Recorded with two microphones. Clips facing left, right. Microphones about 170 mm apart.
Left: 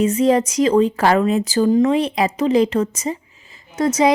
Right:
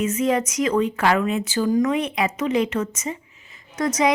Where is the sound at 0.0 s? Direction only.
35° left (ahead or behind).